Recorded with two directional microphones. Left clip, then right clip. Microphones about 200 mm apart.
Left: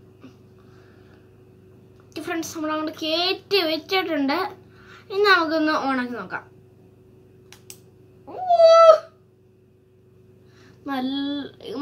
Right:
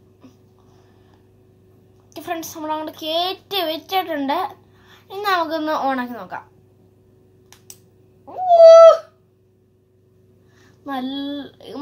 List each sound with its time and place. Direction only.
2.1 s child singing: 10° right (ahead or behind)
8.3 s owl: 15° right (ahead or behind)
10.9 s child singing: 15° right (ahead or behind)